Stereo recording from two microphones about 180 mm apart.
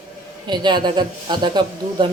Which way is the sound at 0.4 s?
25° right (ahead or behind).